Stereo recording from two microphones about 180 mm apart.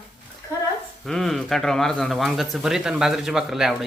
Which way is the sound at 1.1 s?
Centre (ahead or behind).